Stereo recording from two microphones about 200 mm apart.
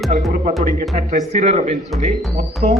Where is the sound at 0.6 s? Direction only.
35° right (ahead or behind).